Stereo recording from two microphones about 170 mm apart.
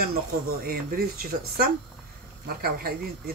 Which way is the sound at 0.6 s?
60° right (ahead or behind).